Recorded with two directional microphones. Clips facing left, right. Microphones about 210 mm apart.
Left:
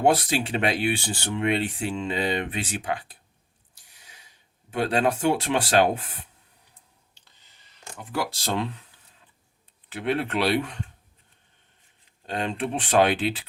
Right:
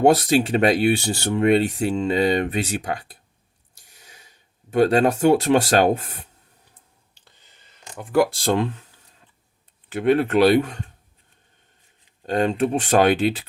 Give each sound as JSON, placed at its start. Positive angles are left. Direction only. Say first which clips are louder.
{"t": 0.0, "sound": "speech", "louder": "right 6 dB", "side_deg": -40}
{"t": 3.8, "sound": "snort", "louder": "right 4 dB", "side_deg": -45}
{"t": 4.7, "sound": "speech", "louder": "right 7 dB", "side_deg": -45}
{"t": 8.1, "sound": "speech", "louder": "right 9 dB", "side_deg": -50}
{"t": 9.9, "sound": "speech", "louder": "right 8 dB", "side_deg": -45}
{"t": 12.2, "sound": "speech", "louder": "right 8 dB", "side_deg": -45}